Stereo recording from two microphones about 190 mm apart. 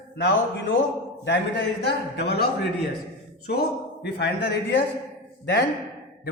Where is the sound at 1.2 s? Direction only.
65° left (ahead or behind).